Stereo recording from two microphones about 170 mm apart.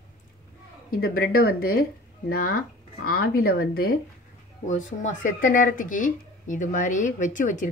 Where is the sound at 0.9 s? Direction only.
60° left (ahead or behind).